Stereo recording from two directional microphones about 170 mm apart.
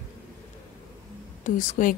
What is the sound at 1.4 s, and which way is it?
Speech, 50° left (ahead or behind).